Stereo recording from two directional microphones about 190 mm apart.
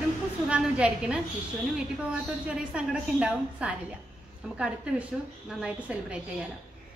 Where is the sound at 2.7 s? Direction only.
5° right (ahead or behind).